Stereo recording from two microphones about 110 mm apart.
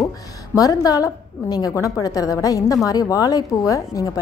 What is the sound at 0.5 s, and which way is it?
A woman's voice, 30° left (ahead or behind).